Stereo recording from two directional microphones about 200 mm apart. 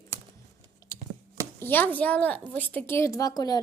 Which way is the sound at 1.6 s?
10° left (ahead or behind).